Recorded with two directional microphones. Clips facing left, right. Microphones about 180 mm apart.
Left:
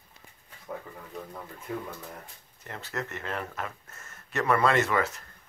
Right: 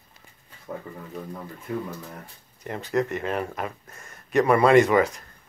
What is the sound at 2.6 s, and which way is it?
Speech, 20° right (ahead or behind).